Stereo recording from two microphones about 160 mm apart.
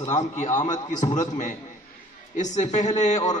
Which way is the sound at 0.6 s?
50° left (ahead or behind).